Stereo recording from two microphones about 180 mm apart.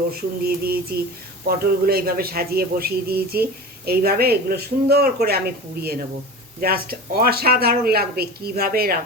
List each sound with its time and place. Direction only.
0.1 s speech: 55° right (ahead or behind)
6.6 s speech: 55° right (ahead or behind)